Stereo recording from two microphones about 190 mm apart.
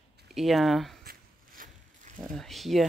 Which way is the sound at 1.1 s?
45° right (ahead or behind).